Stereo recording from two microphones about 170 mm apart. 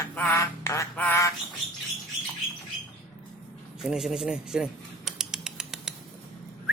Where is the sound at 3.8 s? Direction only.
5° right (ahead or behind).